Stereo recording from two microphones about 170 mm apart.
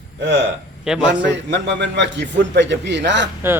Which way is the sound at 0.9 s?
5° right (ahead or behind).